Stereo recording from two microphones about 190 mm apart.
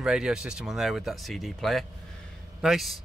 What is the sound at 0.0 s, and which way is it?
Speech, 5° right (ahead or behind).